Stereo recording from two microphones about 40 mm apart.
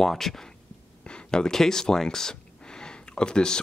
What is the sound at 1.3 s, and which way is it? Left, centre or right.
Speech, centre.